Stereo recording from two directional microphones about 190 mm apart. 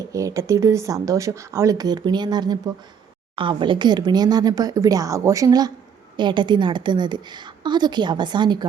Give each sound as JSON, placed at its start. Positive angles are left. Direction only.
{"t": 0.1, "sound": "a woman's voice", "side_deg": -15}